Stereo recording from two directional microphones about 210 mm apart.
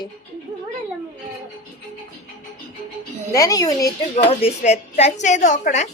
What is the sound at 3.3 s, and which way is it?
Speech, 15° left (ahead or behind).